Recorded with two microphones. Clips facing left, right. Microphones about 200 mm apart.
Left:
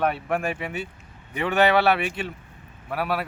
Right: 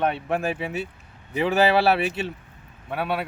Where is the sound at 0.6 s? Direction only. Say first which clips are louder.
Right 2 dB; 30° right (ahead or behind).